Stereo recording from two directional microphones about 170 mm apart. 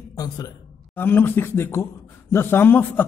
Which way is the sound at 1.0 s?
10° left (ahead or behind).